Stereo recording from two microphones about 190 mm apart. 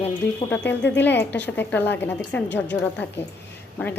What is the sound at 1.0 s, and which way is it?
A woman's voice, 10° left (ahead or behind).